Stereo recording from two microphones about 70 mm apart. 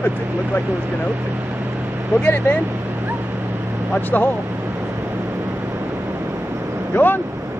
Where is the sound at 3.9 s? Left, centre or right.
Left.